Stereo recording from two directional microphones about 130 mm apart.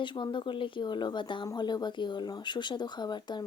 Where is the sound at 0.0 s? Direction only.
40° left (ahead or behind).